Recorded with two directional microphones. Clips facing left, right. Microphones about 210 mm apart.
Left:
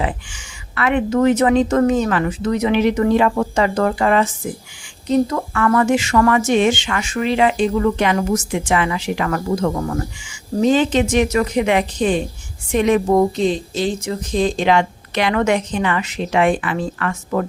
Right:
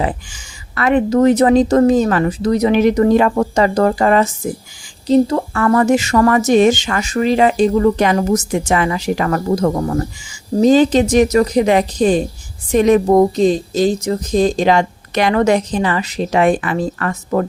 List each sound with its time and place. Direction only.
0.0 s speech: 40° right (ahead or behind)